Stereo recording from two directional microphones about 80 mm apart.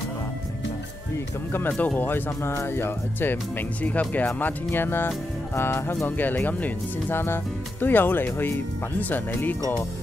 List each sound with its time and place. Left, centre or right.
1.7 s speech: centre